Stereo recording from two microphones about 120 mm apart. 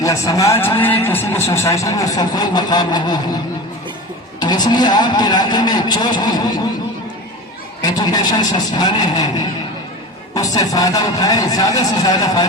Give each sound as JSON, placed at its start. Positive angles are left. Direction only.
{"t": 0.0, "sound": "speech", "side_deg": 25}
{"t": 4.4, "sound": "speech", "side_deg": 35}
{"t": 7.8, "sound": "speech", "side_deg": 35}